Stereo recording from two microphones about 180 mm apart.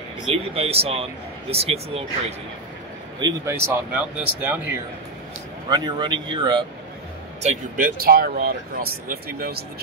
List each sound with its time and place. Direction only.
0.3 s speech: 35° right (ahead or behind)
3.2 s speech: 20° right (ahead or behind)
5.7 s speech: 25° right (ahead or behind)
7.4 s speech: 50° right (ahead or behind)